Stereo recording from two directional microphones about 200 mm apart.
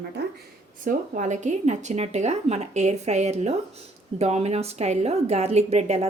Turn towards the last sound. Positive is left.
turn(degrees=-30)  # may be behind; listen again after turning